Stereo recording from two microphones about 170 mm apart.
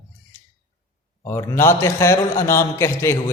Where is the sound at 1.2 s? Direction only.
20° left (ahead or behind).